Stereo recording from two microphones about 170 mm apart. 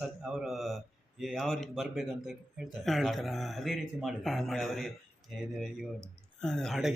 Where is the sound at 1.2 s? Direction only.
Centre (ahead or behind).